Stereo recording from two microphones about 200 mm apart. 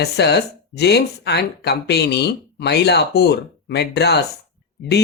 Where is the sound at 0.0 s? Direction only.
55° left (ahead or behind).